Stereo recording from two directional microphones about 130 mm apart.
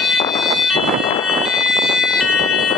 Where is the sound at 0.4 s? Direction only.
Centre (ahead or behind).